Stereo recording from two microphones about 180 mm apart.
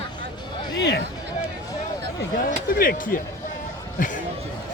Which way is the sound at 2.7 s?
55° left (ahead or behind).